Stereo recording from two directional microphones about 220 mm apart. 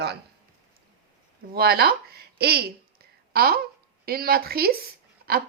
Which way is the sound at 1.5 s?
45° right (ahead or behind).